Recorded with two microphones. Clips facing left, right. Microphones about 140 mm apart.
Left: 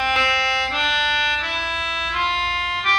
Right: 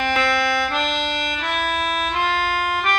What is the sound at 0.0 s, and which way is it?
Music, 50° right (ahead or behind).